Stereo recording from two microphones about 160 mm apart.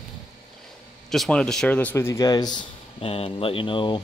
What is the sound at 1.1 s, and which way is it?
Speech, 5° left (ahead or behind).